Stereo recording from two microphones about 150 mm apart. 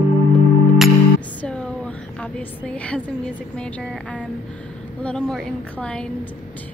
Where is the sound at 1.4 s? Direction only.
10° left (ahead or behind).